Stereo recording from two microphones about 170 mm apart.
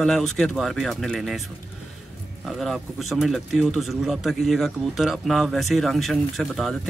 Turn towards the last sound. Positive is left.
turn(degrees=0)  # may be behind; listen again after turning